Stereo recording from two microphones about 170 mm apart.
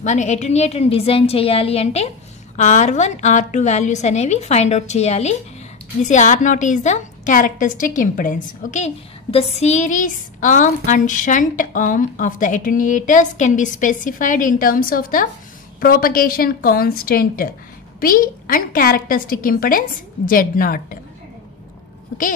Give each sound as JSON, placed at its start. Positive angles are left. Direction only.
{"t": 0.0, "sound": "a woman's voice", "side_deg": 45}